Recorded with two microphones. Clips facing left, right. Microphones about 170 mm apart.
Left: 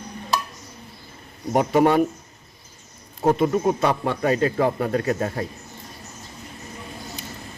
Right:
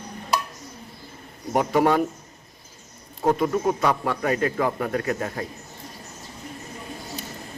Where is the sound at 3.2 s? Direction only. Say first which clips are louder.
Left 2 dB; 25° left (ahead or behind).